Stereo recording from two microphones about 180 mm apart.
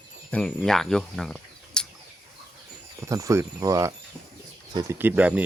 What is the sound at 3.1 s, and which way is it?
Speech, 20° right (ahead or behind).